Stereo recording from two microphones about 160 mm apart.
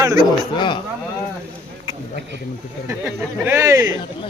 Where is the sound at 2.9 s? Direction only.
15° right (ahead or behind).